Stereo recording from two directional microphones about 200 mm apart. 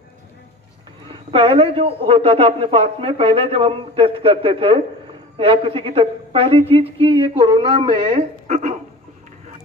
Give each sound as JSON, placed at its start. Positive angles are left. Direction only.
{"t": 1.0, "sound": "a man's voice", "side_deg": -25}
{"t": 8.5, "sound": "speech", "side_deg": -35}